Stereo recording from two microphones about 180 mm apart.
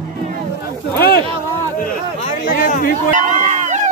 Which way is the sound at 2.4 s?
50° left (ahead or behind).